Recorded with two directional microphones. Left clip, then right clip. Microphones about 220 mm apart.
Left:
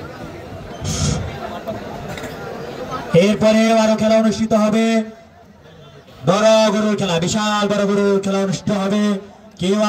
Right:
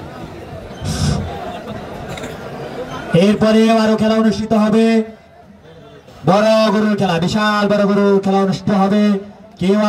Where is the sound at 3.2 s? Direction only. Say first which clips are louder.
Right 4 dB; 30° right (ahead or behind).